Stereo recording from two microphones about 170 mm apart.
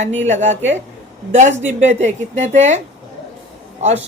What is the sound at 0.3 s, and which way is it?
A woman's voice, 45° right (ahead or behind).